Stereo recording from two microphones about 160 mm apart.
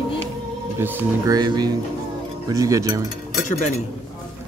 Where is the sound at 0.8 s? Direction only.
25° right (ahead or behind).